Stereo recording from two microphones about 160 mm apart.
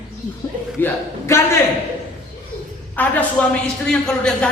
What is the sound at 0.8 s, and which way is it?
Speech, 15° left (ahead or behind).